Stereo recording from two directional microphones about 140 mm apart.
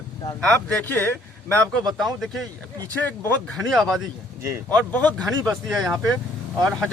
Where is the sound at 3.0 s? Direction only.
15° left (ahead or behind).